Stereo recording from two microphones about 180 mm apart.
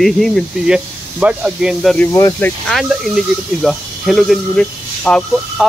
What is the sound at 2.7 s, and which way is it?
Speech, centre (ahead or behind).